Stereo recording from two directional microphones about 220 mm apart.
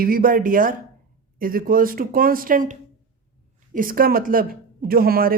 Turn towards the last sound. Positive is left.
turn(degrees=-40)  # may be behind; listen again after turning